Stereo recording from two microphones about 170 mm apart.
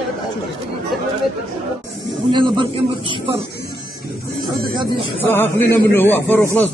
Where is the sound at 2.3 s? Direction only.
30° right (ahead or behind).